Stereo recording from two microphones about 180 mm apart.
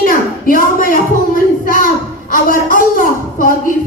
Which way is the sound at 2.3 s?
50° left (ahead or behind).